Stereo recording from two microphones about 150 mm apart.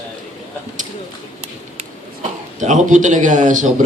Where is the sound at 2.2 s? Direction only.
55° right (ahead or behind).